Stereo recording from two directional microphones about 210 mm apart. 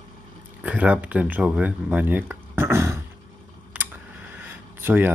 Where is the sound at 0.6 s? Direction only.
5° right (ahead or behind).